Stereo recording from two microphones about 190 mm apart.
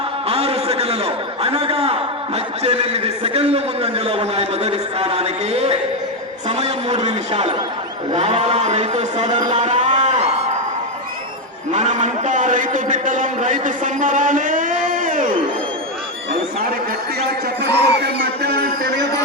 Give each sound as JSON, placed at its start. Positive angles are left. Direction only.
{"t": 0.3, "sound": "a man's voice", "side_deg": -30}
{"t": 11.7, "sound": "a man's voice", "side_deg": -40}
{"t": 17.2, "sound": "music", "side_deg": -60}